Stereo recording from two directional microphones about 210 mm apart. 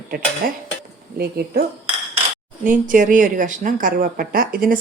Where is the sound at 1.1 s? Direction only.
50° right (ahead or behind).